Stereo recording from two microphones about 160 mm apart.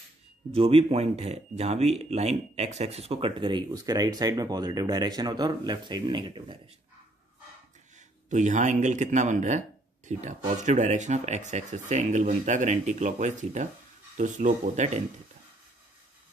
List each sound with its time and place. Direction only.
0.5 s speech: 35° right (ahead or behind)
8.3 s speech: 50° right (ahead or behind)